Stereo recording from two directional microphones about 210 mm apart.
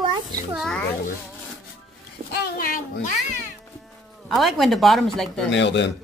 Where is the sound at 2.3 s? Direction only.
45° left (ahead or behind).